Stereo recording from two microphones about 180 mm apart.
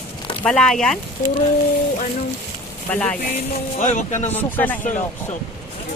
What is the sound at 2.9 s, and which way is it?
Speech, 10° left (ahead or behind).